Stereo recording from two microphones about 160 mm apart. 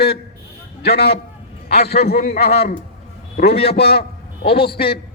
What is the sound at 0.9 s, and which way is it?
A man's voice, 85° left.